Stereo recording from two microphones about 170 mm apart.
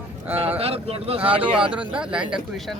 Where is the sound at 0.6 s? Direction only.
35° right (ahead or behind).